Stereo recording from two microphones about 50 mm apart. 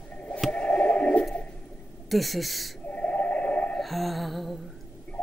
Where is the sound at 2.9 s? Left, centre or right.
Left.